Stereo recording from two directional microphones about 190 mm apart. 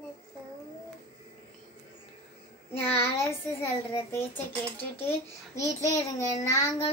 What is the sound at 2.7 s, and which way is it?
A child's voice, 10° left (ahead or behind).